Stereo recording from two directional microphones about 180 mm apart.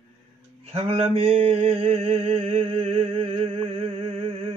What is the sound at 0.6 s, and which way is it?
Mantra, 35° right (ahead or behind).